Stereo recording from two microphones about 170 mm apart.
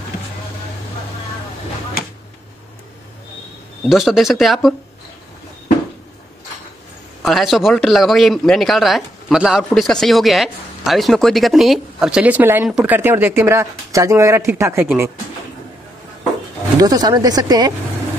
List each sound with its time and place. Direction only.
3.9 s a man's voice: centre (ahead or behind)
7.2 s a man's voice: centre (ahead or behind)
16.8 s speech: 20° right (ahead or behind)